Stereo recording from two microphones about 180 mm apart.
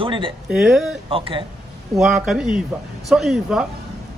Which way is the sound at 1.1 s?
30° right (ahead or behind).